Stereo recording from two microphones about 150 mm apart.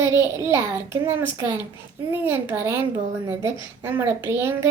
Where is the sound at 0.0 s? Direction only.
20° right (ahead or behind).